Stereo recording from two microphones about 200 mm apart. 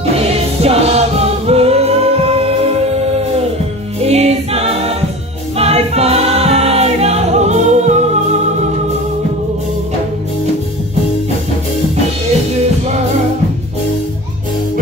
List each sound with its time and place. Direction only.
0.6 s music: 30° right (ahead or behind)
4.0 s choir: 30° right (ahead or behind)